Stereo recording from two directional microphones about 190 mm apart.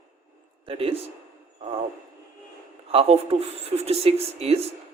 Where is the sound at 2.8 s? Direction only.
30° right (ahead or behind).